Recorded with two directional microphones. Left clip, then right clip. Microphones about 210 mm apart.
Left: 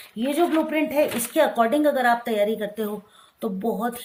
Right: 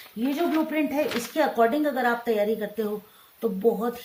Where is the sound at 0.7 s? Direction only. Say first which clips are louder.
Left 4 dB; 45° left (ahead or behind).